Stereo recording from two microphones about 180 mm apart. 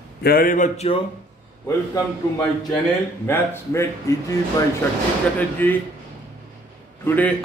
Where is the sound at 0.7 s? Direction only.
30° left (ahead or behind).